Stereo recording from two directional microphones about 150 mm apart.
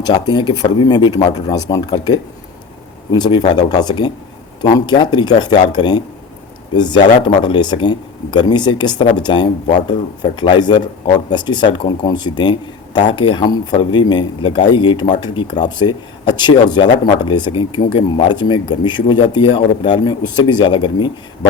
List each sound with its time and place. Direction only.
0.0 s speech: 30° left (ahead or behind)
3.1 s speech: 30° left (ahead or behind)